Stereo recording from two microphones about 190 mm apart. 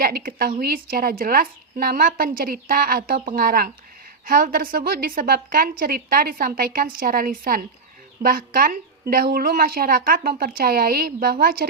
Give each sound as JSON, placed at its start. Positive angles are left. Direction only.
{"t": 0.0, "sound": "a woman's voice", "side_deg": -50}